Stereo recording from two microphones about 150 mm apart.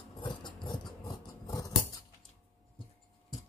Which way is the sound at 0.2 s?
30° left (ahead or behind).